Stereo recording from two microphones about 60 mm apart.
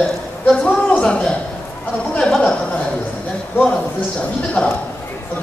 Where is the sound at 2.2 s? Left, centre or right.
Centre.